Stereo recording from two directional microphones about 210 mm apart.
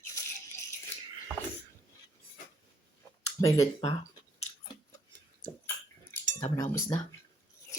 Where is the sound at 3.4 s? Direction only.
15° left (ahead or behind).